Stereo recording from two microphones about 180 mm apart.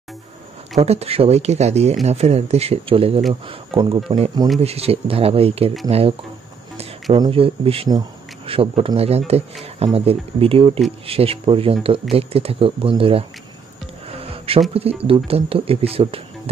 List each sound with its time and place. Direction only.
0.7 s speech: 35° right (ahead or behind)
7.2 s speech: 30° right (ahead or behind)
14.1 s music: 30° right (ahead or behind)
14.7 s speech: 35° right (ahead or behind)